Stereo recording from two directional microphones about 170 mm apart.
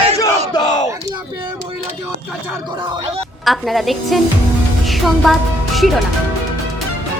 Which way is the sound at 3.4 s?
Centre (ahead or behind).